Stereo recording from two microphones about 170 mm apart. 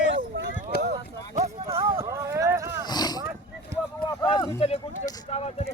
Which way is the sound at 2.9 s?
25° left (ahead or behind).